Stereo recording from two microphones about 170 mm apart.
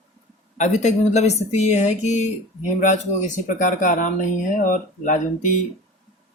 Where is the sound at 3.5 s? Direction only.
50° left (ahead or behind).